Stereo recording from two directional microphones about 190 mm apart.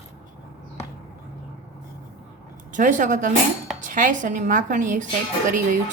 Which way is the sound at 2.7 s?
40° right (ahead or behind).